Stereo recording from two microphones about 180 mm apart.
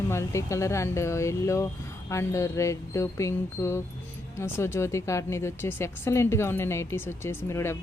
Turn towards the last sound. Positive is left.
turn(degrees=15)  # may be behind; listen again after turning